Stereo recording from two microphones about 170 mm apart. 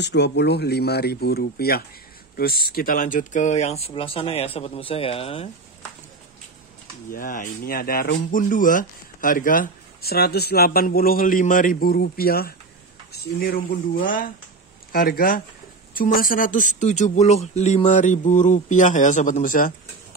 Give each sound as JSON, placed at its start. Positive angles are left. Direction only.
{"t": 0.0, "sound": "speech", "side_deg": 80}
{"t": 7.1, "sound": "a man's voice", "side_deg": 55}